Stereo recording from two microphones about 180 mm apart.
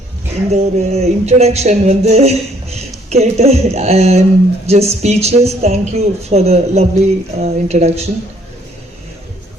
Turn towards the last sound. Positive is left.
turn(degrees=-35)  # may be behind; listen again after turning